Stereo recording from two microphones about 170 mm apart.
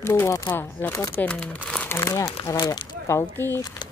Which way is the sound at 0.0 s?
15° left (ahead or behind).